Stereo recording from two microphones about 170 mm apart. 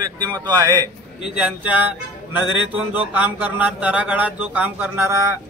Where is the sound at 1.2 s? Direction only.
5° right (ahead or behind).